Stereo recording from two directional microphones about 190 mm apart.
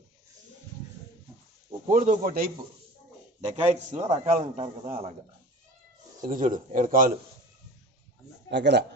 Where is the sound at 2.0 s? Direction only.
40° right (ahead or behind).